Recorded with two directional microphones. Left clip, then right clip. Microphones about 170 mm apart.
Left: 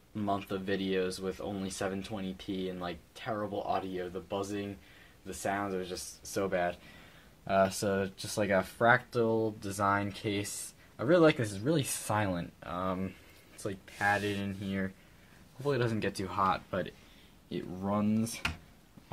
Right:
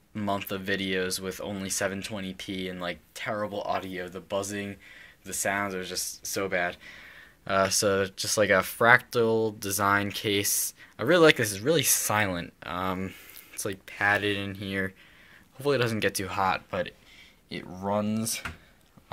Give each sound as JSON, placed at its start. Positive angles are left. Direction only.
{"t": 0.1, "sound": "speech", "side_deg": -15}
{"t": 17.9, "sound": "speech", "side_deg": -20}